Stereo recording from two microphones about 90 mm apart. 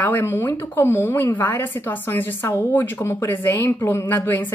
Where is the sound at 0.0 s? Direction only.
20° left (ahead or behind).